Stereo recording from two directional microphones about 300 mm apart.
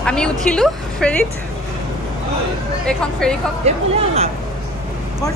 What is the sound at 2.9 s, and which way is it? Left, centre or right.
Speech, centre.